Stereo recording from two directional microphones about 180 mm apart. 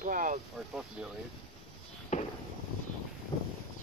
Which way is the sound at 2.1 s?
40° left (ahead or behind).